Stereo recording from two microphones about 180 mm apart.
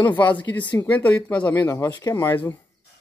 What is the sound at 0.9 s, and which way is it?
Speech, 10° left (ahead or behind).